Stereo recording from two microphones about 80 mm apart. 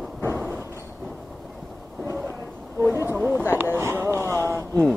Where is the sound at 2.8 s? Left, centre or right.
Right.